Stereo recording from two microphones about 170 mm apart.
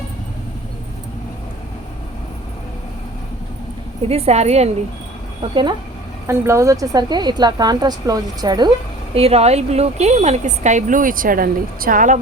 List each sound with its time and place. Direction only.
4.0 s a woman's voice: 40° right (ahead or behind)
6.2 s a woman's voice: 15° right (ahead or behind)
9.1 s a woman's voice: 35° right (ahead or behind)